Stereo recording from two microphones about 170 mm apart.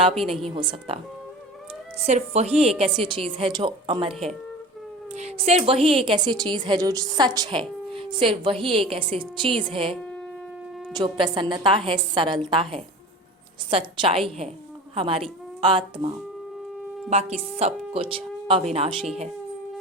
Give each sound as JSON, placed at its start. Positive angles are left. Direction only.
{"t": 0.5, "sound": "a woman's voice", "side_deg": -30}
{"t": 2.0, "sound": "a woman's voice", "side_deg": -40}
{"t": 5.1, "sound": "a woman's voice", "side_deg": -40}
{"t": 10.9, "sound": "a woman's voice", "side_deg": -30}